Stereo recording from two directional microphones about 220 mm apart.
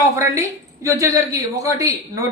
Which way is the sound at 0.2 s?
15° right (ahead or behind).